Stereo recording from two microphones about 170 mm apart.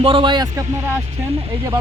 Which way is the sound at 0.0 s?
30° right (ahead or behind).